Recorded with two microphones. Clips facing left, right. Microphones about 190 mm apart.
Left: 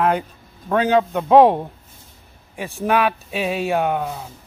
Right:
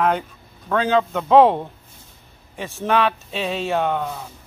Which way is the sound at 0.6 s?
15° left (ahead or behind).